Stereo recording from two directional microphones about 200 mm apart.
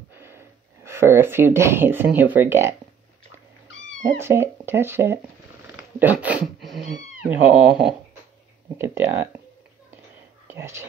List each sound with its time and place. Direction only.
0.1 s speech: 10° right (ahead or behind)
4.0 s speech: 10° right (ahead or behind)
10.5 s speech: 10° right (ahead or behind)